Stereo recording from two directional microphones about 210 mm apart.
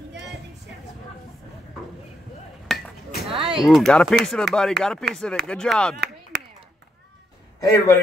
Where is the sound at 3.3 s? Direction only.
25° right (ahead or behind).